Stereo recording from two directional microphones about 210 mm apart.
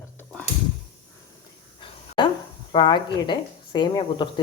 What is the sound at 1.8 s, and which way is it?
Speech, 25° left (ahead or behind).